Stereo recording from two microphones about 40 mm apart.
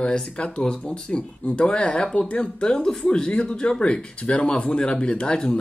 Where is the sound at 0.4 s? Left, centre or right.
Left.